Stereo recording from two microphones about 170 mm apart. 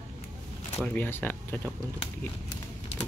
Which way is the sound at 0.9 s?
10° left (ahead or behind).